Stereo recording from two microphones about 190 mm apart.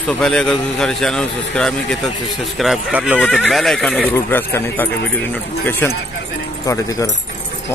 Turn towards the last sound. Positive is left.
turn(degrees=15)  # may be behind; listen again after turning